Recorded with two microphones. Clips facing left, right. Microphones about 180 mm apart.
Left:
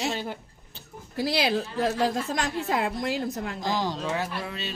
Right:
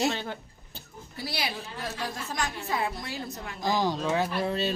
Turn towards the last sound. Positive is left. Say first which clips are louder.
# right 7 dB
turn(degrees=-35)  # may be behind; listen again after turning